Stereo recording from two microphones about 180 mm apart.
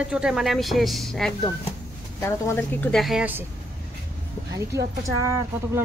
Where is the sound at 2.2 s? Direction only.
15° left (ahead or behind); by 3.5 s 10° right (ahead or behind).